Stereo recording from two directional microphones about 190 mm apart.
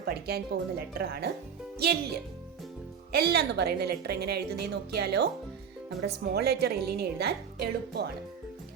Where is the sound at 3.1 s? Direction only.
55° right (ahead or behind).